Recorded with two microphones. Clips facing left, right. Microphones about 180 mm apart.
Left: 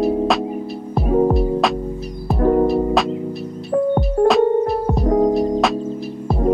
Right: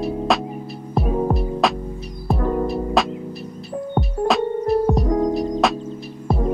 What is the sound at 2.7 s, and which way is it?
Music, centre (ahead or behind).